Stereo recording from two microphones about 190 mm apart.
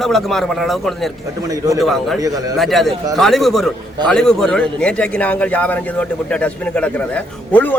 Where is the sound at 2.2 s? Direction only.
20° right (ahead or behind).